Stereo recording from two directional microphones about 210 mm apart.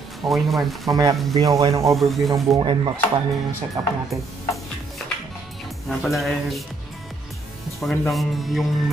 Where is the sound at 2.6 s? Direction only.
20° right (ahead or behind).